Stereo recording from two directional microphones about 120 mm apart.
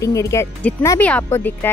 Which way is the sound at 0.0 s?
25° left (ahead or behind).